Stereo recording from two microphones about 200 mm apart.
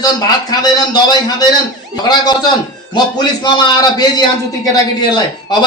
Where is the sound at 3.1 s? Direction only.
20° left (ahead or behind).